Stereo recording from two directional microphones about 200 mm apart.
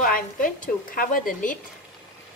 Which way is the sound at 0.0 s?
45° left (ahead or behind).